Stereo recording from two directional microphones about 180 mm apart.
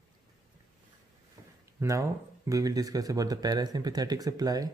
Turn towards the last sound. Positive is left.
turn(degrees=-20)  # may be behind; listen again after turning